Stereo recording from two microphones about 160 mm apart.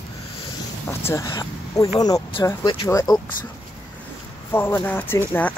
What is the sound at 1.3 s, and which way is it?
Speech, 20° left (ahead or behind).